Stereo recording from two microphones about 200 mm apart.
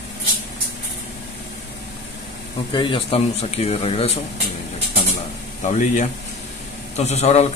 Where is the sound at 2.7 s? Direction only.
25° left (ahead or behind).